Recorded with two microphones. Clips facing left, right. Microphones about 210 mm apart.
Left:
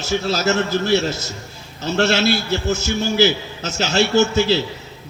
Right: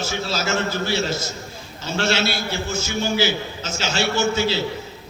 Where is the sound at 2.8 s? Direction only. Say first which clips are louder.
Left 3 dB; 45° left (ahead or behind).